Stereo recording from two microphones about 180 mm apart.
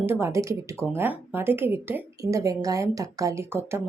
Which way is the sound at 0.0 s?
15° right (ahead or behind).